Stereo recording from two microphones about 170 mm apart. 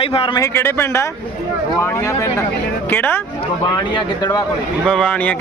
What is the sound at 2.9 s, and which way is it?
Speech, 10° left (ahead or behind).